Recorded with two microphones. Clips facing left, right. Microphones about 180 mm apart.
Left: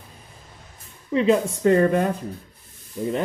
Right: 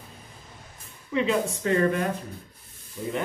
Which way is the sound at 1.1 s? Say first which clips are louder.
Left 5 dB; 40° left (ahead or behind).